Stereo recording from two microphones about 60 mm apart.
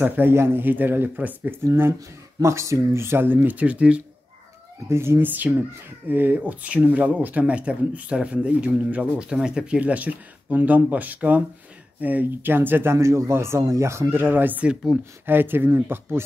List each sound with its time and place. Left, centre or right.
0.0 s speech: right
0.3 s speech: right
1.6 s speech: right; by 4.0 s centre
4.8 s speech: right
5.2 s speech: right
12.9 s speech: right